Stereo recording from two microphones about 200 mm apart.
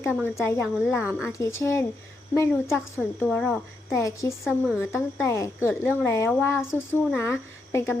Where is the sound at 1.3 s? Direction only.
15° left (ahead or behind).